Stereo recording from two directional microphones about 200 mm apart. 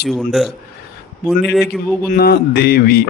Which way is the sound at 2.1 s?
50° left (ahead or behind).